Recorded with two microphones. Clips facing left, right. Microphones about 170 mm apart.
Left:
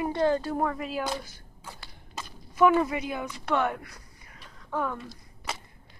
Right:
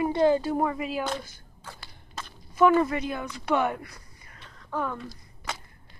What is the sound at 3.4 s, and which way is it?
Speech, 5° right (ahead or behind).